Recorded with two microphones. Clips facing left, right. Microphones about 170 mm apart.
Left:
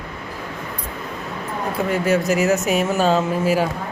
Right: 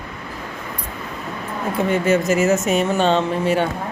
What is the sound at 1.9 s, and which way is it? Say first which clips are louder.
Speech: right 1 dB; centre (ahead or behind).